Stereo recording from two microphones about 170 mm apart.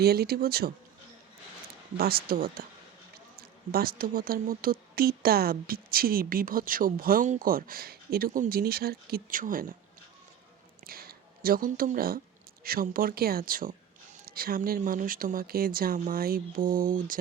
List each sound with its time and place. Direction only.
0.0 s speech: 65° right (ahead or behind)
2.0 s speech: 60° right (ahead or behind)
3.7 s speech: 60° right (ahead or behind)
10.8 s speech: 60° right (ahead or behind)
14.8 s speech: 50° right (ahead or behind)